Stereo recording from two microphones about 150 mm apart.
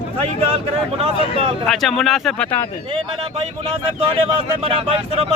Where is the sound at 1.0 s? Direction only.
35° right (ahead or behind).